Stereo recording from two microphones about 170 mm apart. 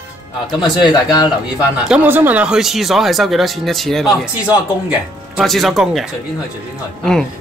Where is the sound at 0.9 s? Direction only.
25° left (ahead or behind).